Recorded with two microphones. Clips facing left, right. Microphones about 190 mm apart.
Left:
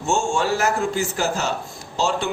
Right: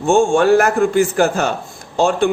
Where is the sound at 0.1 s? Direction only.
55° right (ahead or behind).